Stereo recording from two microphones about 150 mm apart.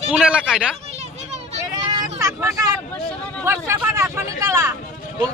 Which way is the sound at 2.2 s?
20° right (ahead or behind).